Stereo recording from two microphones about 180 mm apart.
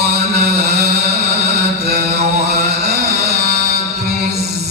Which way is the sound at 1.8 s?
60° right (ahead or behind).